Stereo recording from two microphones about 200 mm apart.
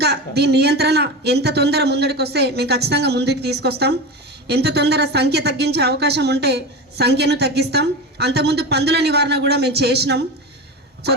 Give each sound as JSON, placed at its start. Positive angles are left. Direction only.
{"t": 0.0, "sound": "a woman's voice", "side_deg": -55}